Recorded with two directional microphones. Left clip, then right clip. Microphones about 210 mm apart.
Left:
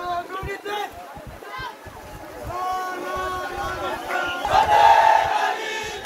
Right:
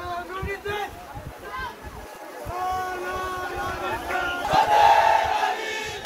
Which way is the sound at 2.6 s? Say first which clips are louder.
Left 1 dB; 60° left (ahead or behind).